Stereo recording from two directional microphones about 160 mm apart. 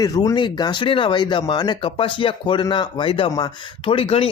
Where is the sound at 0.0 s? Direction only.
25° left (ahead or behind).